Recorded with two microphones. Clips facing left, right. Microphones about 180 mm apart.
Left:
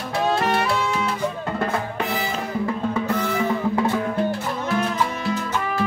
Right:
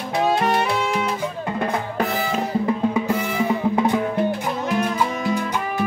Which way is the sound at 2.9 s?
10° right (ahead or behind).